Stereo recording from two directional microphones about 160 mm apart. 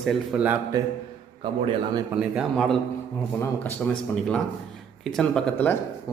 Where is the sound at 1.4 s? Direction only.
35° right (ahead or behind).